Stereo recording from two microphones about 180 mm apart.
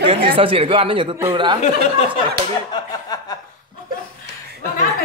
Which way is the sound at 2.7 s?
20° left (ahead or behind).